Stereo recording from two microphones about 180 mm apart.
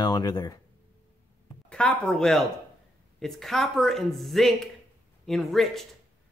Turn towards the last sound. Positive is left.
turn(degrees=0)  # may be behind; listen again after turning